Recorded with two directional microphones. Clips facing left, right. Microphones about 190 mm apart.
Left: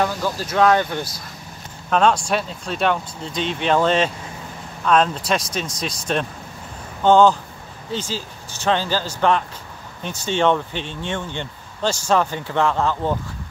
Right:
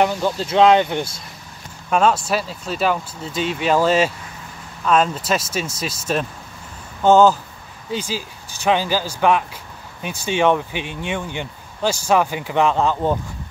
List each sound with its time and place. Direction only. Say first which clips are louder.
0.0 s speech: right 3 dB; 20° right (ahead or behind)
1.9 s speech: even; 5° right (ahead or behind)